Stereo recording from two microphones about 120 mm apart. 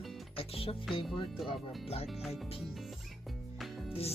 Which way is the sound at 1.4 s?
55° left (ahead or behind).